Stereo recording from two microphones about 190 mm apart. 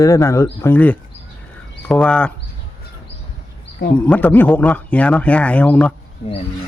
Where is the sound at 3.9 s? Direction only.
10° left (ahead or behind).